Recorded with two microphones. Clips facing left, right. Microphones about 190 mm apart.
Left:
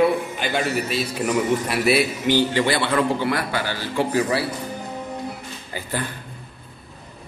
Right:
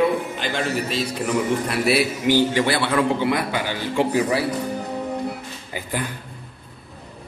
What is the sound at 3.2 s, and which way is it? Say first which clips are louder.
A man's voice: right 1 dB; 20° right (ahead or behind).